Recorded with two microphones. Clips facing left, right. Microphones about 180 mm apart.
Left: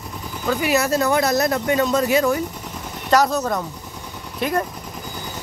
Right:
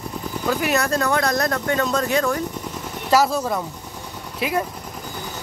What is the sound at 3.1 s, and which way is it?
Speech, 5° right (ahead or behind).